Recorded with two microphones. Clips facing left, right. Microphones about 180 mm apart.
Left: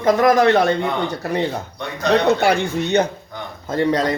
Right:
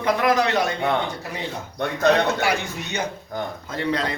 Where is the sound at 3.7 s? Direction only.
45° left (ahead or behind).